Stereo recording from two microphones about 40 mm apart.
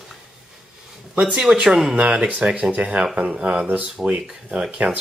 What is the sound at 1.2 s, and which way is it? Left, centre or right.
Speech, centre.